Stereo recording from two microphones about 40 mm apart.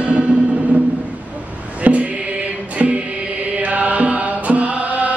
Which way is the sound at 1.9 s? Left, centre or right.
Right.